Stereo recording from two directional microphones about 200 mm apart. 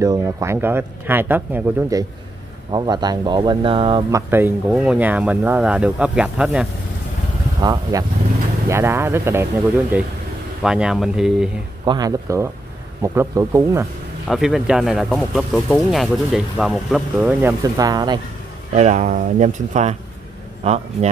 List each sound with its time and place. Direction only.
0.0 s speech: 15° right (ahead or behind)
4.3 s speech: 10° right (ahead or behind)
7.6 s speech: 20° right (ahead or behind)
10.6 s speech: 5° right (ahead or behind)
11.8 s speech: 20° right (ahead or behind)
14.2 s speech: centre (ahead or behind); by 18.2 s 20° right (ahead or behind)
18.7 s speech: 35° right (ahead or behind)